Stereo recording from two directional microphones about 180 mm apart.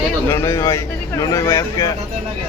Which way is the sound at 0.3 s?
15° left (ahead or behind).